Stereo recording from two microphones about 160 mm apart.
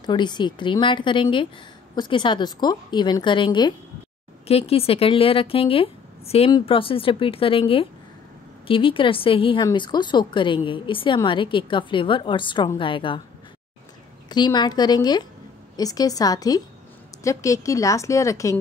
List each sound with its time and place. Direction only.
0.0 s a woman's voice: 25° left (ahead or behind)
14.3 s a woman's voice: 25° left (ahead or behind)